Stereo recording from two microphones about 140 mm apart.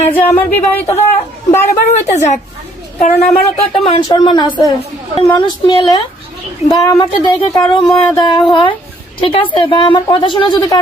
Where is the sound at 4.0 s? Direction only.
30° left (ahead or behind).